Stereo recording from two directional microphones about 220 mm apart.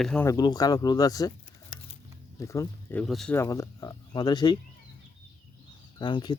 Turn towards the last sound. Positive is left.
turn(degrees=20)  # may be behind; listen again after turning